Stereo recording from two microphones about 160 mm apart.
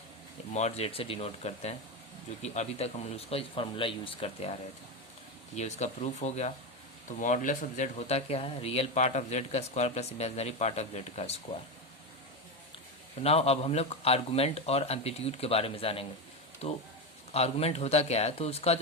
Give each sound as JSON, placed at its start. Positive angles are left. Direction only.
{"t": 0.5, "sound": "speech", "side_deg": 40}
{"t": 5.5, "sound": "speech", "side_deg": 45}
{"t": 13.2, "sound": "speech", "side_deg": 40}